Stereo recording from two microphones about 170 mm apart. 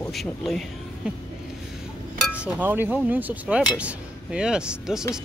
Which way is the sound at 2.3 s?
10° right (ahead or behind).